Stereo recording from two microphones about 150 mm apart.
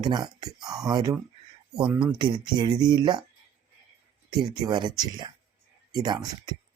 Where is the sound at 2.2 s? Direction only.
30° right (ahead or behind).